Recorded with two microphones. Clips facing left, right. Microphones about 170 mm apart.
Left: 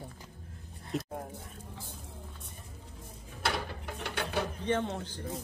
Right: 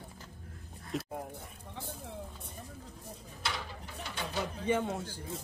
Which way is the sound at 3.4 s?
60° left (ahead or behind).